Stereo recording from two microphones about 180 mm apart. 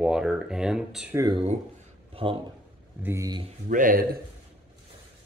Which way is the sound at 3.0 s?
20° right (ahead or behind).